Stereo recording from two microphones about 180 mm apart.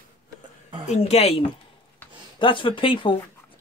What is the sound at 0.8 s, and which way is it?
Speech, 35° left (ahead or behind).